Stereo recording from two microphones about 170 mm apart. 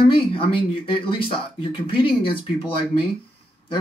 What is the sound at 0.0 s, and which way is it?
Speech, 30° left (ahead or behind).